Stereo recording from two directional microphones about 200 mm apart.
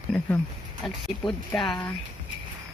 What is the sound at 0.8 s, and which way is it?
Speech, centre (ahead or behind).